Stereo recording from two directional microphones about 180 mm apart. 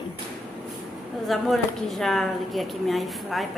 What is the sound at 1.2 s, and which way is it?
Speech, centre (ahead or behind).